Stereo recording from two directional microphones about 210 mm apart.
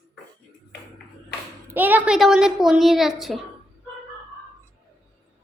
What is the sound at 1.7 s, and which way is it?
A woman's voice, 10° right (ahead or behind).